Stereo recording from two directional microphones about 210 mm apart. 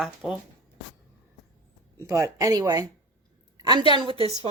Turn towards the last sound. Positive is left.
turn(degrees=-30)  # may be behind; listen again after turning